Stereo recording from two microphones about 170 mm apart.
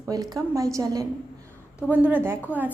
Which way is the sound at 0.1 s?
20° right (ahead or behind).